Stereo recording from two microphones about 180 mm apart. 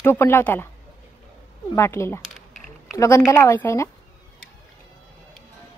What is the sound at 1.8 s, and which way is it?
Speech, 15° left (ahead or behind).